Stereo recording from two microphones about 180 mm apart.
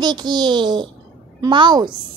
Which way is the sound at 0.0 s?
25° right (ahead or behind).